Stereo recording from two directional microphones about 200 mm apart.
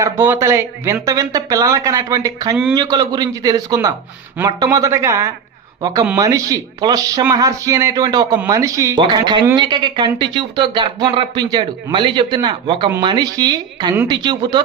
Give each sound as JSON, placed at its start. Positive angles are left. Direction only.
{"t": 0.0, "sound": "speech", "side_deg": -15}